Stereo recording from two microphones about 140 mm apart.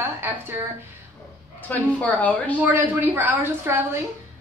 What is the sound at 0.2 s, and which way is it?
Speech, 15° right (ahead or behind).